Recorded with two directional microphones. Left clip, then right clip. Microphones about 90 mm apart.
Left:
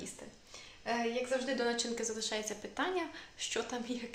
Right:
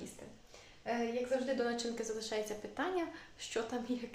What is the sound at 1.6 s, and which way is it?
A woman's voice, 35° right (ahead or behind).